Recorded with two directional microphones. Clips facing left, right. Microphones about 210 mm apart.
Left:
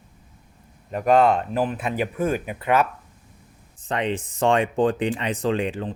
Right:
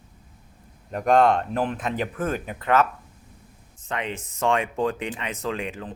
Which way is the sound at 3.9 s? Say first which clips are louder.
Left 5 dB; 35° left (ahead or behind).